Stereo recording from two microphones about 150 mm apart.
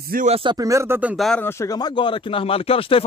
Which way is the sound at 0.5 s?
20° right (ahead or behind).